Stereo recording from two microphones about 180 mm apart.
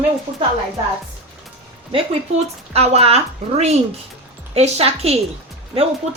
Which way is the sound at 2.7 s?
35° right (ahead or behind).